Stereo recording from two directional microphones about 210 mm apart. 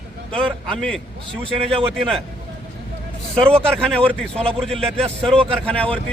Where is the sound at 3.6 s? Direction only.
5° left (ahead or behind).